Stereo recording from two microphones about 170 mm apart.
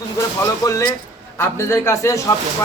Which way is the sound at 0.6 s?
25° left (ahead or behind).